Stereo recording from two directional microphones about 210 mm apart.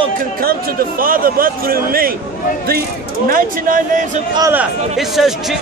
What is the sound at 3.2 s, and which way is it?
Speech, 40° right (ahead or behind).